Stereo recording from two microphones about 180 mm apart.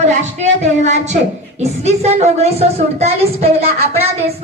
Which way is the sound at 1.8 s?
35° right (ahead or behind).